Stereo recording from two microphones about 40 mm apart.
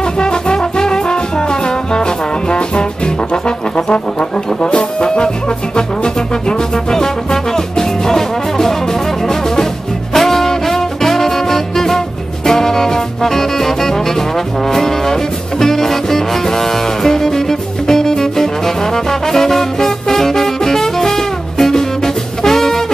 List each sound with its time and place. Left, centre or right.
0.2 s brass instrument: centre
6.9 s music: centre
10.1 s music: centre
14.7 s brass instrument: centre
15.6 s music: centre